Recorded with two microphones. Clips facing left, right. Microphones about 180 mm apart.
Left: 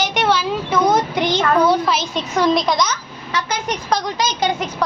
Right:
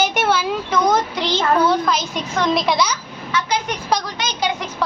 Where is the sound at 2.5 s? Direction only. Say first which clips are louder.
Even; 5° right (ahead or behind).